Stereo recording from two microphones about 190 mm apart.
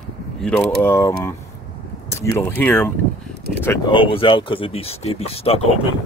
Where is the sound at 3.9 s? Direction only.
25° left (ahead or behind).